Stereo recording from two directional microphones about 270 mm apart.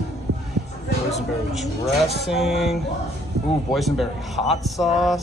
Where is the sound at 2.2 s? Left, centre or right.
Centre.